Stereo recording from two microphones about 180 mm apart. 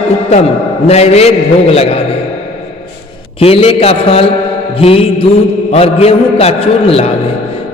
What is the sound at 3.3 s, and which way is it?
A man's voice, 35° left (ahead or behind).